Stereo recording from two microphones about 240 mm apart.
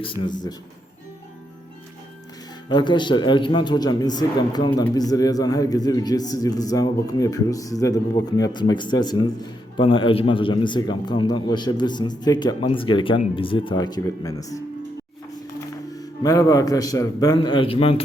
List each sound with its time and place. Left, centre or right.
0.0 s a man's voice: left
2.6 s a man's voice: centre
16.0 s a man's voice: centre